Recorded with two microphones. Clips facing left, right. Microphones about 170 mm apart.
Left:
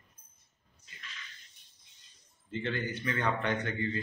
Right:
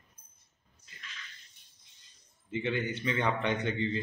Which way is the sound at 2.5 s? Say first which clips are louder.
Right 2 dB; 15° right (ahead or behind).